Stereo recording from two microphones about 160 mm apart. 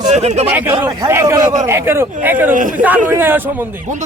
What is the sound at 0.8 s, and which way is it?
A man's voice, 15° right (ahead or behind).